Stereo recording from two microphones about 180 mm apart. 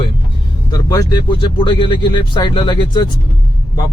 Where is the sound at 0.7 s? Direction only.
20° left (ahead or behind).